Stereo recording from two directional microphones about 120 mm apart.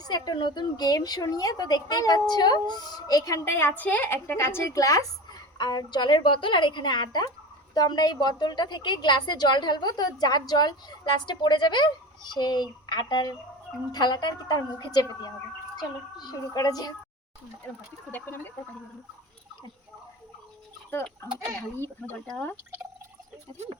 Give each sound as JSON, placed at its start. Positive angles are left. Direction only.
{"t": 0.0, "sound": "a woman's voice", "side_deg": 35}
{"t": 18.1, "sound": "a sound", "side_deg": 15}
{"t": 20.9, "sound": "speech", "side_deg": 20}